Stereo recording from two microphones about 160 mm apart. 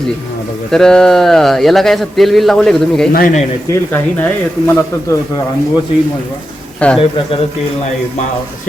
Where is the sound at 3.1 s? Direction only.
65° left (ahead or behind).